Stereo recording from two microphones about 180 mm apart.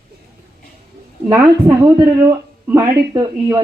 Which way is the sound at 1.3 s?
15° right (ahead or behind).